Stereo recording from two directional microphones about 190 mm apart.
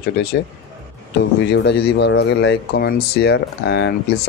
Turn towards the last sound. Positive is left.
turn(degrees=60)  # may be behind; listen again after turning